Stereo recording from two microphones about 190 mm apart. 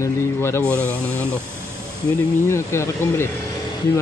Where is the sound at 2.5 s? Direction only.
15° left (ahead or behind).